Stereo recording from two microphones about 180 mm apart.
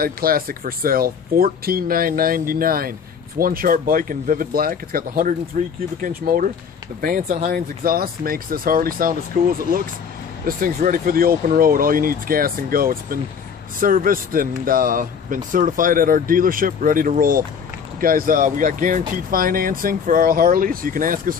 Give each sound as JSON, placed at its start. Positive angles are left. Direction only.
{"t": 0.0, "sound": "speech", "side_deg": -55}